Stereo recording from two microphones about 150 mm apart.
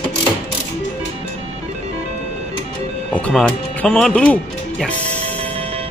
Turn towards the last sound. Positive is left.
turn(degrees=10)  # may be behind; listen again after turning